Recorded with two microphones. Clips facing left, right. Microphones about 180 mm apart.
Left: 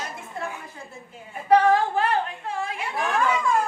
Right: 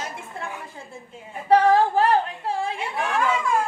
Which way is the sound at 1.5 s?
35° right (ahead or behind).